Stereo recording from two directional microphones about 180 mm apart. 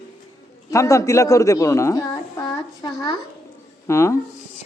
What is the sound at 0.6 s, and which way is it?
A woman's voice, 15° left (ahead or behind).